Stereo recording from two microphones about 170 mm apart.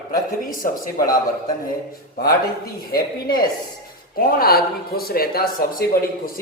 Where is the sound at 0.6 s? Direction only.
55° left (ahead or behind).